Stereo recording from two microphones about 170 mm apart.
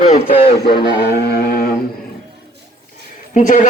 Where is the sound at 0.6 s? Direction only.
70° left (ahead or behind).